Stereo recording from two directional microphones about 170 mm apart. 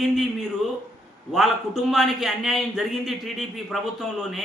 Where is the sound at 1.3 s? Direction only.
Centre (ahead or behind).